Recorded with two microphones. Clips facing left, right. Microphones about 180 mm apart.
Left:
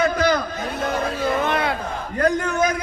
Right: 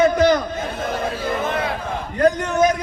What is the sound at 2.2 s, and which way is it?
Speech, 20° right (ahead or behind).